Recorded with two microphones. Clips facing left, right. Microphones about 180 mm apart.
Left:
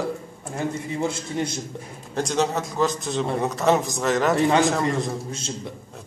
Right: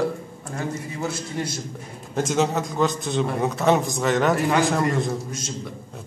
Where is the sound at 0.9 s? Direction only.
25° left (ahead or behind).